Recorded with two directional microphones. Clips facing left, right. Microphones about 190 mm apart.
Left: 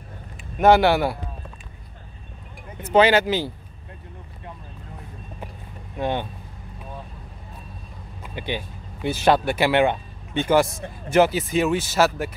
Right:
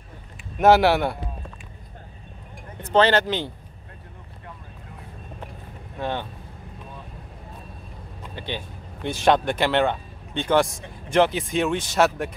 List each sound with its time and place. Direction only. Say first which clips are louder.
0.6 s speech: left 1 dB; centre (ahead or behind)
2.8 s speech: left 2 dB; 10° left (ahead or behind)
5.9 s speech: left 3 dB; 15° left (ahead or behind)
8.2 s speech: left 3 dB; 10° left (ahead or behind)